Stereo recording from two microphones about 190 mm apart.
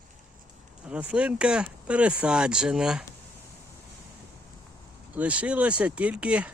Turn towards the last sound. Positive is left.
turn(degrees=-5)  # may be behind; listen again after turning